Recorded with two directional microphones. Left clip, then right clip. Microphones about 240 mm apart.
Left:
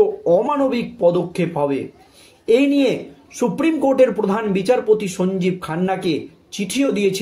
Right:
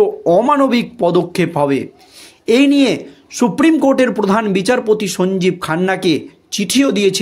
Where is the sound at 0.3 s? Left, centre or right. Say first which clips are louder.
Right 5 dB; right.